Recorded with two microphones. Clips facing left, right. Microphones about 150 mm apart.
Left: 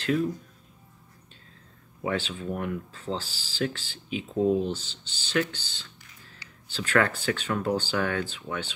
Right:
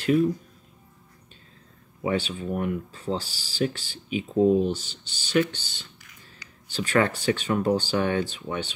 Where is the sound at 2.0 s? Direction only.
10° right (ahead or behind).